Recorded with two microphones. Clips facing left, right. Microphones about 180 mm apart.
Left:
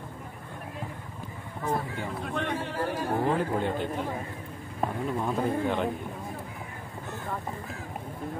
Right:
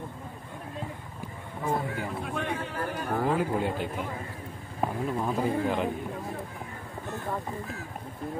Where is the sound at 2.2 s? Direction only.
5° right (ahead or behind).